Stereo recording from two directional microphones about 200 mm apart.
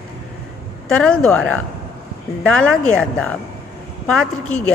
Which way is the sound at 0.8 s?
5° left (ahead or behind).